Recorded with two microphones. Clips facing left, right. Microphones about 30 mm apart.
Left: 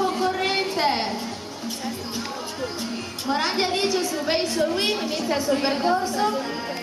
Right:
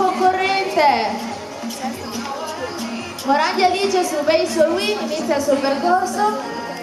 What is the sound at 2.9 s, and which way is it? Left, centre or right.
Music, centre.